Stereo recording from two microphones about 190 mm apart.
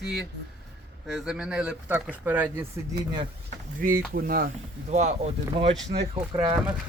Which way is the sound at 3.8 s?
50° right (ahead or behind).